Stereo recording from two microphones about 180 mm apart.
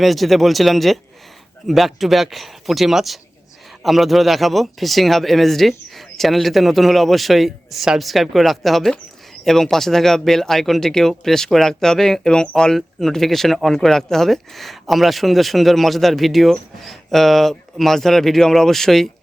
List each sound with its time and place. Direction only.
0.0 s speech: centre (ahead or behind)